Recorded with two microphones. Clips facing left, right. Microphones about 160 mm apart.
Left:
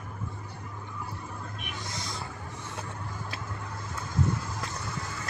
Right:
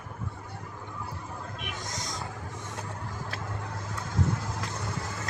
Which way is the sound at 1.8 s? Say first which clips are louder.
Left 1 dB; 45° right (ahead or behind).